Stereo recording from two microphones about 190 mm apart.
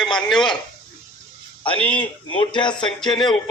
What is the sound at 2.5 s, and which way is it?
Speech, 25° left (ahead or behind).